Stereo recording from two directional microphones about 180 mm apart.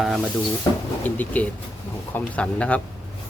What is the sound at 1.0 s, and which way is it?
Speech, 10° left (ahead or behind).